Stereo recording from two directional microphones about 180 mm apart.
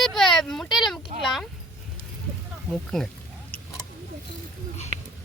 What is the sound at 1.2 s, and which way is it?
Speech, centre (ahead or behind).